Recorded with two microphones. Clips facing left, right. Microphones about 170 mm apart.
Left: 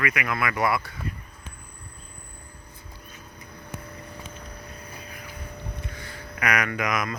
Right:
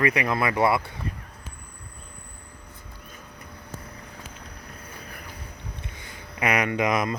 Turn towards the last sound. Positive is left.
turn(degrees=-30)  # may be behind; listen again after turning